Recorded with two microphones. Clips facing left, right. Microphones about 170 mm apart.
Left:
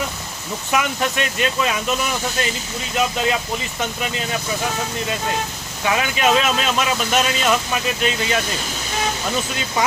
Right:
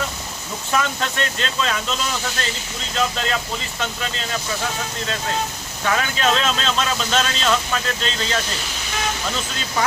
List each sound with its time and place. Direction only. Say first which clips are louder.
0.7 s speech: left 2 dB; 15° left (ahead or behind)
5.8 s speech: left 2 dB; 15° left (ahead or behind)